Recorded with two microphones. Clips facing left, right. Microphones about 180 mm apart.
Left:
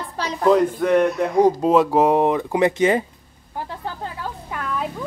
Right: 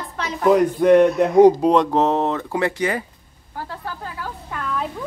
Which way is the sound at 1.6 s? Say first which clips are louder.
Left 1 dB; 5° left (ahead or behind).